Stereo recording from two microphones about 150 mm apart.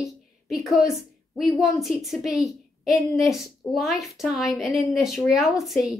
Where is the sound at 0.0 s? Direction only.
Centre (ahead or behind).